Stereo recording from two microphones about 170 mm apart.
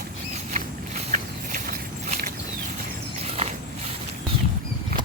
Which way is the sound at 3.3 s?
35° right (ahead or behind).